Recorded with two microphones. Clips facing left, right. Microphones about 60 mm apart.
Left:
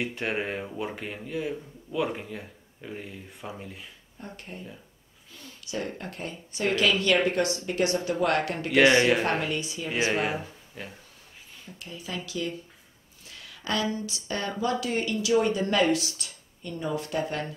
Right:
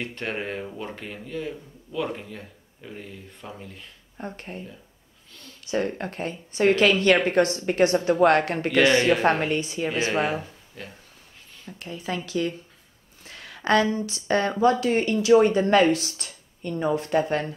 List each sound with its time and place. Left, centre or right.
0.0 s speech: centre
4.2 s speech: right
5.7 s speech: right
8.7 s speech: centre
9.4 s speech: right
10.3 s speech: centre
11.8 s speech: right
13.2 s a sound: right
13.9 s speech: right